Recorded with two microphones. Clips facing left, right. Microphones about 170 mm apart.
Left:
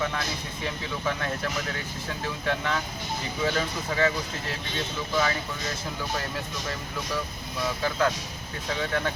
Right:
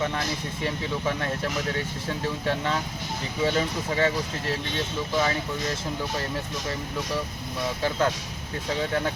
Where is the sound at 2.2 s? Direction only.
30° right (ahead or behind).